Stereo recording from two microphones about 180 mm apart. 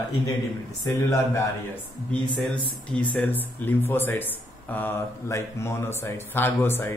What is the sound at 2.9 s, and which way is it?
Speech, 10° left (ahead or behind).